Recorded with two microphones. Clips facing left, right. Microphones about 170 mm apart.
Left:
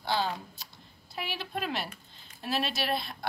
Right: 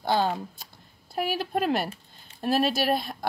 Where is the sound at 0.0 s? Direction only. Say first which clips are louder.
Right 6 dB; 50° right (ahead or behind).